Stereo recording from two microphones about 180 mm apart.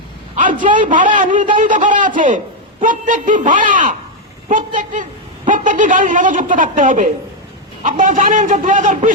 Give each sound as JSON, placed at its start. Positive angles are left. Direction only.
{"t": 0.6, "sound": "a woman's voice", "side_deg": -45}